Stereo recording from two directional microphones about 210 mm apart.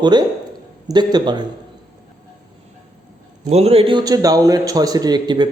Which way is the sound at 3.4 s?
30° right (ahead or behind).